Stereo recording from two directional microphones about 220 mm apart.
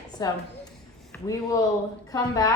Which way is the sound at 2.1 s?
15° left (ahead or behind).